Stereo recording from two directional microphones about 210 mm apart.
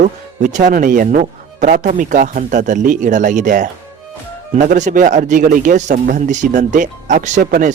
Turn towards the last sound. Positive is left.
turn(degrees=-35)  # may be behind; listen again after turning